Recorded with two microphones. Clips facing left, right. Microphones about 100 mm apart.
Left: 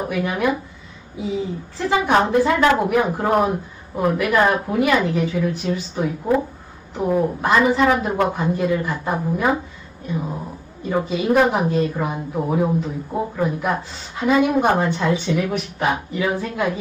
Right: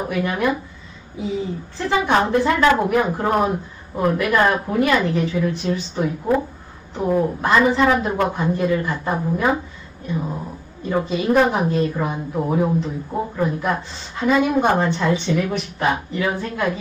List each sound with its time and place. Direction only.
0.1 s a man's voice: 5° left (ahead or behind)
1.9 s a woman's voice: 10° left (ahead or behind)